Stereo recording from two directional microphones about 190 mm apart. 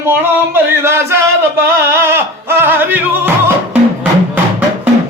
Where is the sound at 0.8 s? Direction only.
15° right (ahead or behind).